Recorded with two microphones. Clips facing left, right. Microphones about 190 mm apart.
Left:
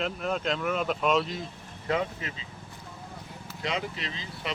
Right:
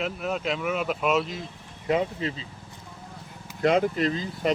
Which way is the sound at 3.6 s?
50° right (ahead or behind).